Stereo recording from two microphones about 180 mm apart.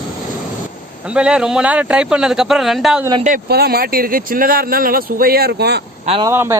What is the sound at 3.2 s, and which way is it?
Speech, 55° right (ahead or behind).